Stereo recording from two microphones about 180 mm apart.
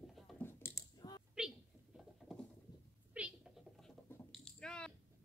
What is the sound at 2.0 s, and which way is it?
Patter, 5° left (ahead or behind).